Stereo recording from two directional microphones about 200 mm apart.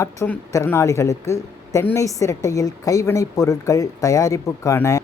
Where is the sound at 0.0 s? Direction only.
15° left (ahead or behind).